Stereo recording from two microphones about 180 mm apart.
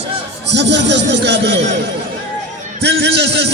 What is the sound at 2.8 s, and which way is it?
Speech, 70° right (ahead or behind).